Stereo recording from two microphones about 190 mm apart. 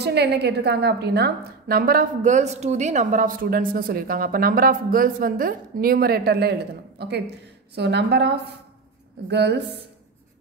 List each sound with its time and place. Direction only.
0.0 s a woman's voice: 60° right (ahead or behind)